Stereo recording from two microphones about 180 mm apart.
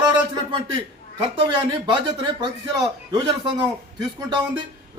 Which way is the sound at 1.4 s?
25° right (ahead or behind).